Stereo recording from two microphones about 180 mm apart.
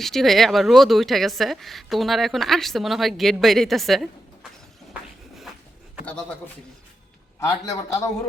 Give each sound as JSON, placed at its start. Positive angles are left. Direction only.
{"t": 0.0, "sound": "a woman's voice", "side_deg": 0}
{"t": 7.3, "sound": "a man's voice", "side_deg": 20}